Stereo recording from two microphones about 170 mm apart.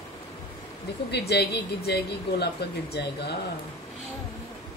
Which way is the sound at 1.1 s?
70° left (ahead or behind).